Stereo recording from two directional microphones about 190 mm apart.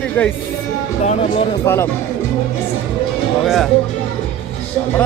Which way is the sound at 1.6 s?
10° left (ahead or behind).